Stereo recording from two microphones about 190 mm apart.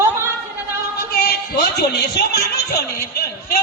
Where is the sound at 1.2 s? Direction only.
55° left (ahead or behind).